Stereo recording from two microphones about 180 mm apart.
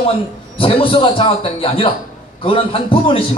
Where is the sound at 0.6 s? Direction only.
30° left (ahead or behind).